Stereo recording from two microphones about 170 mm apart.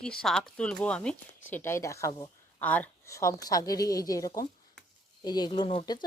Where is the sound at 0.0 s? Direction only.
5° left (ahead or behind); by 2.3 s 20° left (ahead or behind).